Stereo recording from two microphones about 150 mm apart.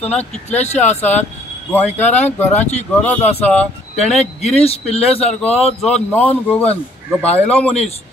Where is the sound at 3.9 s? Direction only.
45° left (ahead or behind).